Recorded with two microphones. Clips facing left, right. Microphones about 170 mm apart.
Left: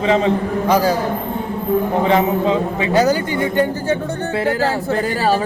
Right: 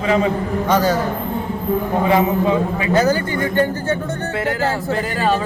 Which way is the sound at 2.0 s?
25° left (ahead or behind).